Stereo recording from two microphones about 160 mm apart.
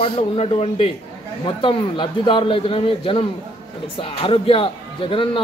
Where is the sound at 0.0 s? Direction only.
35° left (ahead or behind).